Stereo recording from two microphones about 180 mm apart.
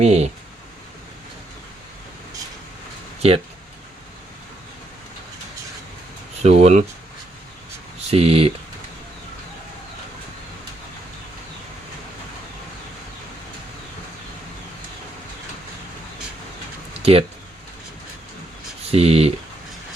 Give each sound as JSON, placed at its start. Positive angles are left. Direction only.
{"t": 0.0, "sound": "speech", "side_deg": -35}
{"t": 3.2, "sound": "speech", "side_deg": -35}
{"t": 6.4, "sound": "speech", "side_deg": -40}
{"t": 8.0, "sound": "speech", "side_deg": -35}
{"t": 17.0, "sound": "a sound", "side_deg": -35}
{"t": 18.9, "sound": "speech", "side_deg": -35}